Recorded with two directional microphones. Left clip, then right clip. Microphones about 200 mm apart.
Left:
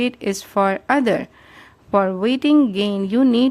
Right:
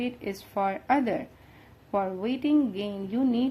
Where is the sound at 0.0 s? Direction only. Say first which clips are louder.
Left 11 dB; 35° left (ahead or behind).